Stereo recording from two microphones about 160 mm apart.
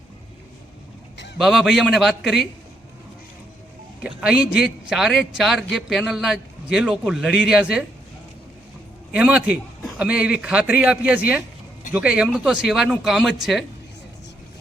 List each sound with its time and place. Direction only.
1.4 s a man's voice: 5° right (ahead or behind)
4.0 s a man's voice: 5° right (ahead or behind)
9.1 s a man's voice: 10° right (ahead or behind)